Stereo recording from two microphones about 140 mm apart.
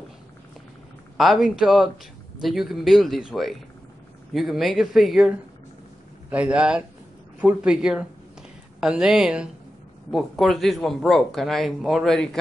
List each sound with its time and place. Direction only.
1.1 s speech: centre (ahead or behind)
6.3 s a man's voice: 10° right (ahead or behind)